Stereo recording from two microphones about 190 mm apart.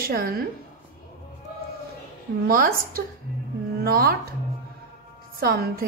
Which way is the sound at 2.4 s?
50° right (ahead or behind).